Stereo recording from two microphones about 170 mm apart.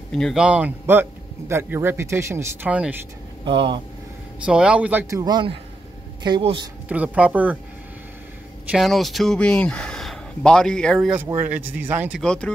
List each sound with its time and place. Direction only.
0.1 s speech: centre (ahead or behind)
3.4 s speech: 30° right (ahead or behind)
4.5 s speech: 5° right (ahead or behind)
5.2 s a man's voice: 25° right (ahead or behind)
6.9 s speech: 10° right (ahead or behind)
8.6 s speech: centre (ahead or behind)
11.2 s speech: 10° right (ahead or behind)
12.2 s speech: 5° left (ahead or behind)